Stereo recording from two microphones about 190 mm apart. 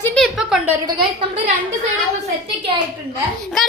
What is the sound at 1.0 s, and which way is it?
Speech, 30° right (ahead or behind).